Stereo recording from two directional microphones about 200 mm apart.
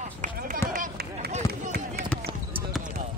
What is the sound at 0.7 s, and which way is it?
Run, 45° right (ahead or behind).